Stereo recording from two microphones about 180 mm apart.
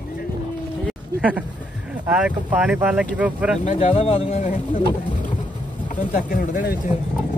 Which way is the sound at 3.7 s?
30° left (ahead or behind).